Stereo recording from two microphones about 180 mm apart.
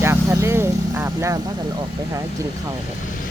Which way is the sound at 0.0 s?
15° right (ahead or behind).